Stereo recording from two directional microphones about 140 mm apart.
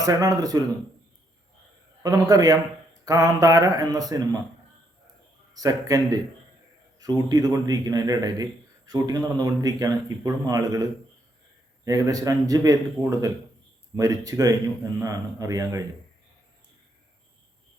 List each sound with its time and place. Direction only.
0.0 s speech: 25° right (ahead or behind)
2.0 s speech: 25° right (ahead or behind)
5.5 s speech: 25° right (ahead or behind)
11.9 s speech: 25° right (ahead or behind)